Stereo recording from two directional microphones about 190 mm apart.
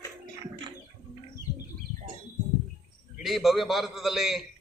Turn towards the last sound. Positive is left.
turn(degrees=0)  # may be behind; listen again after turning